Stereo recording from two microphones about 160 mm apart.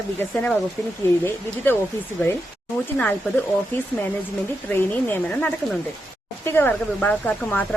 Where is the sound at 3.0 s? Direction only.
10° left (ahead or behind).